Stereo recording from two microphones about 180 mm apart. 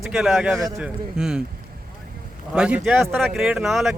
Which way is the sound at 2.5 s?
5° right (ahead or behind).